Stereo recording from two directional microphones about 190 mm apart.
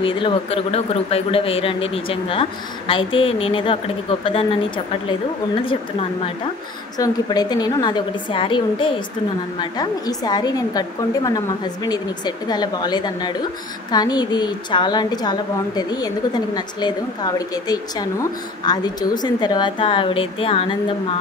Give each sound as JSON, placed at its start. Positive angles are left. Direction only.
{"t": 0.0, "sound": "a woman's voice", "side_deg": 25}